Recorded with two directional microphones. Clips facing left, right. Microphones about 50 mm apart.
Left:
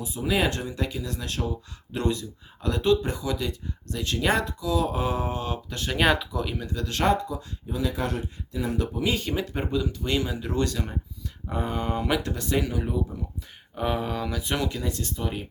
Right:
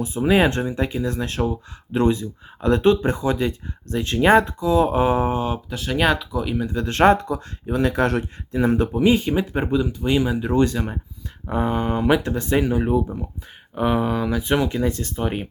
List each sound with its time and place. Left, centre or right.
0.0 s speech: right
5.7 s speech: centre
6.7 s speech: right
8.5 s speech: right
9.0 s speech: right
13.7 s speech: centre; by 15.4 s right